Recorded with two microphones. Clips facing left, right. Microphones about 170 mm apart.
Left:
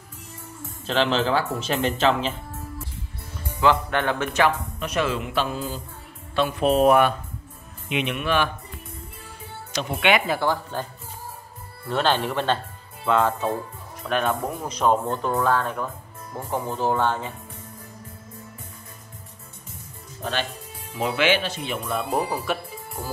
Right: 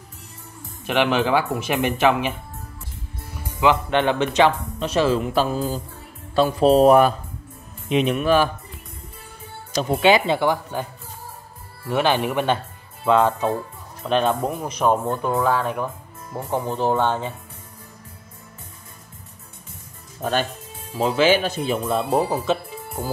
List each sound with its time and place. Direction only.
0.8 s speech: 15° right (ahead or behind)
3.3 s speech: 15° right (ahead or behind); by 8.5 s 35° right (ahead or behind)
9.9 s speech: 30° right (ahead or behind); by 10.9 s 15° right (ahead or behind)
11.9 s speech: 15° right (ahead or behind)
14.6 s speech: 10° right (ahead or behind)
20.2 s speech: 45° right (ahead or behind)
20.9 s speech: 35° right (ahead or behind)
21.7 s speech: 25° right (ahead or behind)